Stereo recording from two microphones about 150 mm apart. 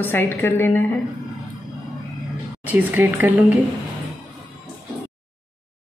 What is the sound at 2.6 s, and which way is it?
Speech, 10° right (ahead or behind).